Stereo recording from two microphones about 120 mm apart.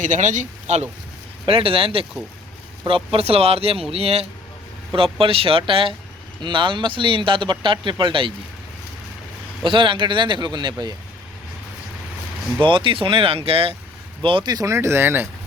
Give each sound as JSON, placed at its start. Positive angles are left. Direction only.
{"t": 0.0, "sound": "speech", "side_deg": -90}
{"t": 1.5, "sound": "speech", "side_deg": -50}
{"t": 9.6, "sound": "speech", "side_deg": -45}
{"t": 12.6, "sound": "speech", "side_deg": -45}